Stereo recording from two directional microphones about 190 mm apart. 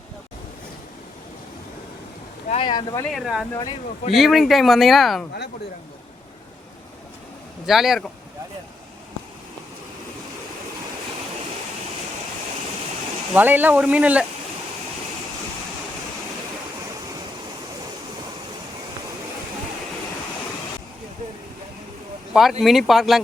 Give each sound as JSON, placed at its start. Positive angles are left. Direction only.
{"t": 2.5, "sound": "speech", "side_deg": 25}
{"t": 3.1, "sound": "speech", "side_deg": -5}
{"t": 3.5, "sound": "speech", "side_deg": 20}
{"t": 4.1, "sound": "speech", "side_deg": 0}
{"t": 7.7, "sound": "speech", "side_deg": 0}
{"t": 13.3, "sound": "speech", "side_deg": -10}
{"t": 22.3, "sound": "a sound", "side_deg": 0}
{"t": 22.6, "sound": "speech", "side_deg": 0}